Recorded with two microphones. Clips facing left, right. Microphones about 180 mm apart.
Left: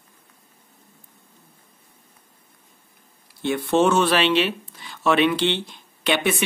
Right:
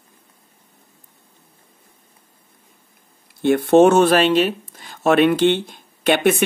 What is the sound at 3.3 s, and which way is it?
Speech, 50° right (ahead or behind).